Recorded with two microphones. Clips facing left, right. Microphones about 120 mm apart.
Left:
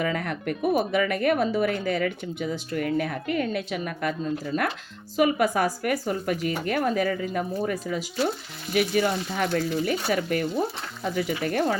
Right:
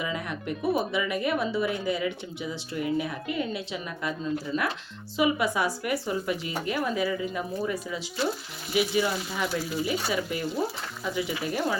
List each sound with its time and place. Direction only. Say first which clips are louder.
0.0 s a woman's voice: left 5 dB; 55° left (ahead or behind)